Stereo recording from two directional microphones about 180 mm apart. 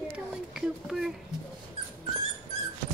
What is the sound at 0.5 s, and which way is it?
Speech, centre (ahead or behind).